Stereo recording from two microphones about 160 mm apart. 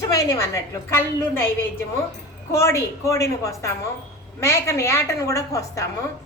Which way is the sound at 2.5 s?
20° left (ahead or behind).